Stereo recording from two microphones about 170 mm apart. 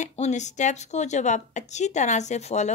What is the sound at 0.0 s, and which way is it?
A woman's voice, 40° left (ahead or behind).